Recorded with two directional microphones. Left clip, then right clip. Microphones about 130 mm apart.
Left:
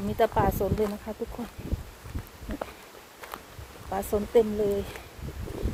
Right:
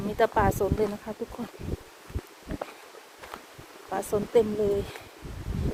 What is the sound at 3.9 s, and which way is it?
Speech, 25° right (ahead or behind).